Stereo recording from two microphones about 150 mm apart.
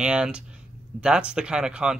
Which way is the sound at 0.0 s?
5° right (ahead or behind).